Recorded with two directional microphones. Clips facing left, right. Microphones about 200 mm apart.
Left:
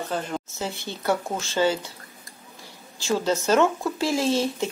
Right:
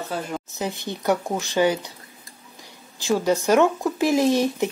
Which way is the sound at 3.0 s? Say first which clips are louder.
Right 3 dB; 15° right (ahead or behind).